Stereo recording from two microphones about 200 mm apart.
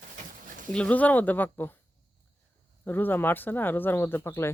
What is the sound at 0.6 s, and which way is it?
Speech, 5° left (ahead or behind).